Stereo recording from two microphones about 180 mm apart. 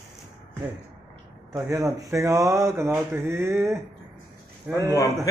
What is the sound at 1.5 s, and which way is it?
Speech, 20° right (ahead or behind).